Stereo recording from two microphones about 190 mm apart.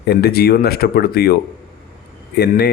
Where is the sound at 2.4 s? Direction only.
55° left (ahead or behind).